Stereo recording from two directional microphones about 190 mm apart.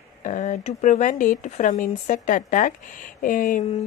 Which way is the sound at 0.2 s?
40° left (ahead or behind).